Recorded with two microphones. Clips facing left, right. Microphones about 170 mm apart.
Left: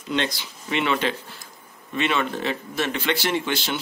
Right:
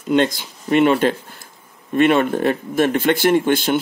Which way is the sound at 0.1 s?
50° right (ahead or behind).